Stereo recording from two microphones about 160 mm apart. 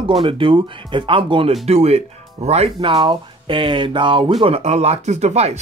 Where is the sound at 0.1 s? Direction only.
35° right (ahead or behind).